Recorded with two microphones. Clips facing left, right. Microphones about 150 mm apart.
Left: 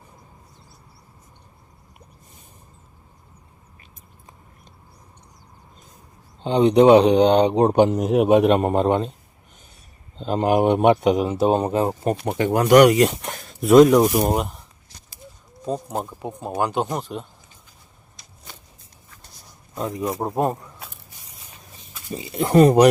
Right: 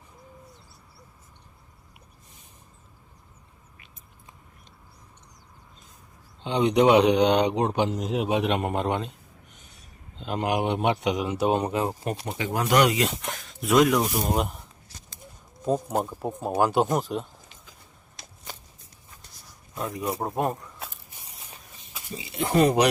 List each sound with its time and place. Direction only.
6.4 s speech: 35° left (ahead or behind)
10.2 s speech: 35° left (ahead or behind)
12.5 s speech: 60° left (ahead or behind); by 14.1 s 40° left (ahead or behind)
14.3 s speech: centre (ahead or behind)
15.6 s speech: 5° right (ahead or behind)
19.7 s speech: 25° left (ahead or behind)
22.1 s speech: 45° left (ahead or behind)